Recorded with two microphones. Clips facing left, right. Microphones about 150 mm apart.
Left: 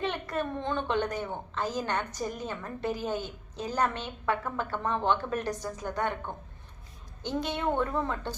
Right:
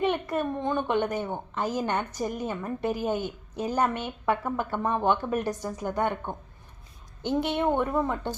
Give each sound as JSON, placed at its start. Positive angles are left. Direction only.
{"t": 0.0, "sound": "a woman's voice", "side_deg": -15}